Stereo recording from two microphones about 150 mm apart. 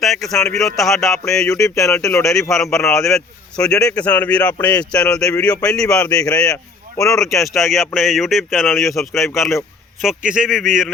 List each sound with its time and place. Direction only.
0.0 s speech: centre (ahead or behind)
1.5 s speech: 20° left (ahead or behind)
2.5 s a man's voice: 5° left (ahead or behind)
6.5 s speech: 20° left (ahead or behind)
7.5 s speech: centre (ahead or behind)
9.1 s a man's voice: 20° left (ahead or behind)
10.0 s speech: 5° right (ahead or behind)